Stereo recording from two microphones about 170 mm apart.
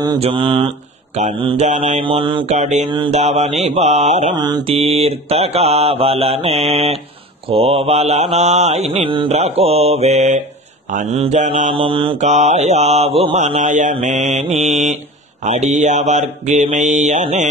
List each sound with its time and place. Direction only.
0.2 s mantra: 30° right (ahead or behind)
1.6 s mantra: 40° right (ahead or behind)
2.4 s mantra: 40° right (ahead or behind)
2.9 s mantra: 30° right (ahead or behind)
3.2 s mantra: 40° right (ahead or behind)
4.4 s mantra: 30° right (ahead or behind)
11.7 s mantra: 30° right (ahead or behind)